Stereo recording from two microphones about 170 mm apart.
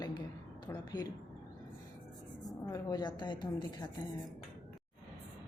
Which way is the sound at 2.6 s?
20° left (ahead or behind).